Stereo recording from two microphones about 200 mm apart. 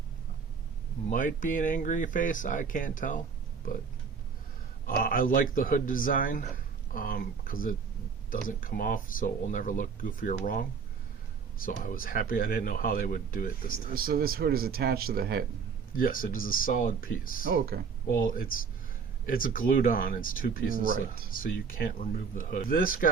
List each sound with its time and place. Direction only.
1.1 s speech: 40° left (ahead or behind)
4.9 s speech: 45° left (ahead or behind)
13.7 s speech: 45° right (ahead or behind)
15.9 s speech: 45° left (ahead or behind)